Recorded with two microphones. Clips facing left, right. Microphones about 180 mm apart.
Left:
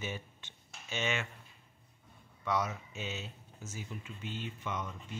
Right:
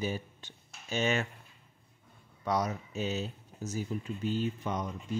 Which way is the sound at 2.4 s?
40° right (ahead or behind).